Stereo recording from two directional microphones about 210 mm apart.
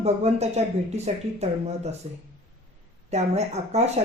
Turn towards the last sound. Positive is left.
turn(degrees=-30)  # may be behind; listen again after turning